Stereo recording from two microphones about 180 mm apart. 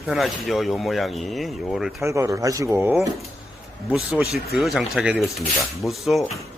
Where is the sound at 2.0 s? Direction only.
15° right (ahead or behind).